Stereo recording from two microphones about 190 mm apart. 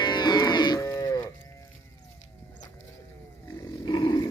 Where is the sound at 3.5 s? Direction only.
20° left (ahead or behind).